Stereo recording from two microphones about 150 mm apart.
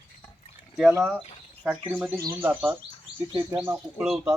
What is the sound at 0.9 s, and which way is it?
Speech, 10° right (ahead or behind).